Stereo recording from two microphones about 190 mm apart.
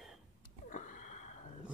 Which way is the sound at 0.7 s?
40° left (ahead or behind).